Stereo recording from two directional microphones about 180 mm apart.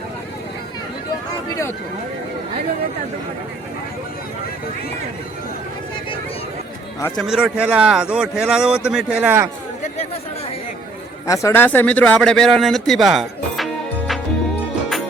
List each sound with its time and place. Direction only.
1.5 s a sound: 15° left (ahead or behind)
7.2 s speech: 5° right (ahead or behind)
11.3 s speech: 15° left (ahead or behind)